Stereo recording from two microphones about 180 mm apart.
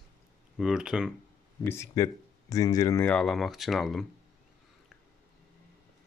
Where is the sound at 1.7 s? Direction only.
15° left (ahead or behind).